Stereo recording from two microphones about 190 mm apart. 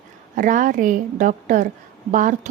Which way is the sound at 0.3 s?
45° right (ahead or behind).